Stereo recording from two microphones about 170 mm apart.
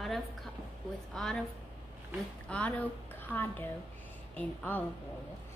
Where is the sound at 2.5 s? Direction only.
10° left (ahead or behind).